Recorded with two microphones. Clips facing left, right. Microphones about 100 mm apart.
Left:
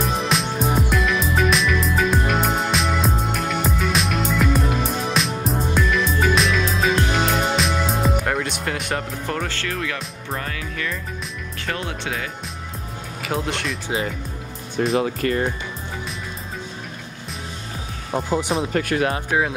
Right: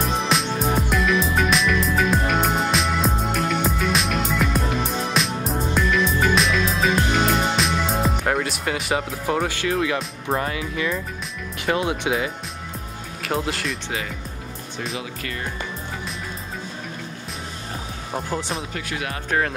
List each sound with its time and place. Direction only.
0.0 s music: centre (ahead or behind); by 9.9 s 15° right (ahead or behind)
10.3 s speech: 20° right (ahead or behind)
13.2 s speech: centre (ahead or behind)
15.0 s speech: 40° left (ahead or behind)
18.1 s speech: 15° left (ahead or behind)
18.7 s speech: 50° left (ahead or behind)
19.3 s speech: 10° left (ahead or behind)